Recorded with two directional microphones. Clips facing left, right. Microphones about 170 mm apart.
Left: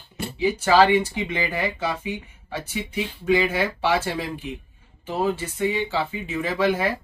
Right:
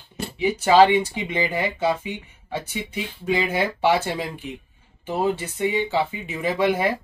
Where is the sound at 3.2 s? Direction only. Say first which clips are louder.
Left 1 dB; 20° right (ahead or behind).